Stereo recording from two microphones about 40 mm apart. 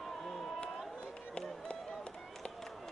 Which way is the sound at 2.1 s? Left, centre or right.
Centre.